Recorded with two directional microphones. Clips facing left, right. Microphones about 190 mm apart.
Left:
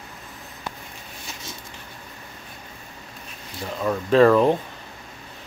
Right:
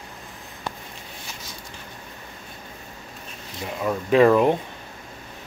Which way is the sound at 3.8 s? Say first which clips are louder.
Left 1 dB; 10° right (ahead or behind).